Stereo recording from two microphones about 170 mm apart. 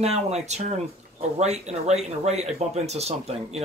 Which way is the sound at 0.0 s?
40° right (ahead or behind).